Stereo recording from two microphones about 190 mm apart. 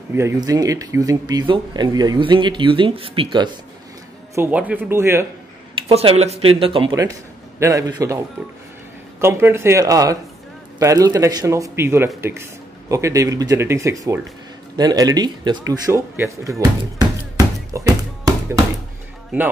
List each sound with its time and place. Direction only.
0.1 s speech: 15° right (ahead or behind)
4.4 s speech: 10° right (ahead or behind)
5.9 s speech: 30° right (ahead or behind)
7.0 s a man's voice: 15° right (ahead or behind)
9.2 s speech: 15° right (ahead or behind)
17.7 s a sound: 20° right (ahead or behind)